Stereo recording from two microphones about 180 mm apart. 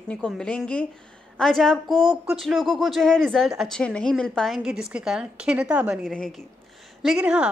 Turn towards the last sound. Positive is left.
turn(degrees=-5)  # may be behind; listen again after turning